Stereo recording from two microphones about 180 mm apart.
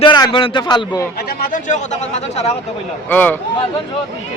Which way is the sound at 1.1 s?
55° left (ahead or behind).